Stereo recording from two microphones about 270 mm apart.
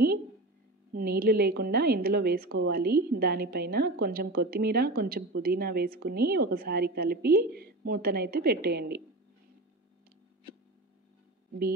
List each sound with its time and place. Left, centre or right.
0.9 s a woman's voice: right